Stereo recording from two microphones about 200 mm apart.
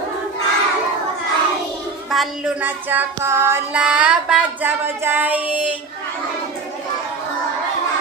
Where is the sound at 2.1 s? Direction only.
Centre (ahead or behind).